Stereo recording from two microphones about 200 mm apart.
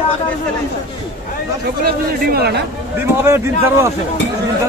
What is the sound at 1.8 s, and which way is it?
Speech, 50° right (ahead or behind).